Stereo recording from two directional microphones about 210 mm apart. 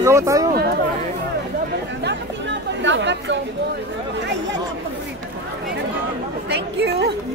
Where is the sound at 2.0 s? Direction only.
60° right (ahead or behind).